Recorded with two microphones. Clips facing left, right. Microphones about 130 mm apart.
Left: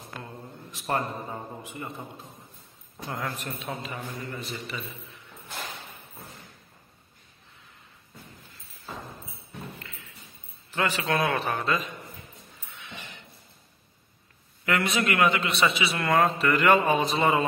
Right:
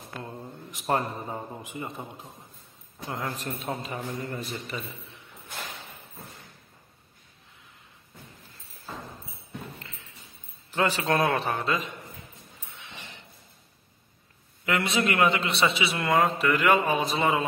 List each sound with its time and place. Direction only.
0.7 s a man's voice: 15° right (ahead or behind)
3.1 s a man's voice: 25° right (ahead or behind); by 4.8 s 45° right (ahead or behind)
10.8 s a man's voice: 30° right (ahead or behind)
14.6 s a man's voice: 25° right (ahead or behind)
16.2 s mantra: 10° right (ahead or behind)